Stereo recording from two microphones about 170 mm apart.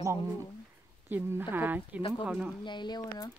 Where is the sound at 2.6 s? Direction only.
25° left (ahead or behind).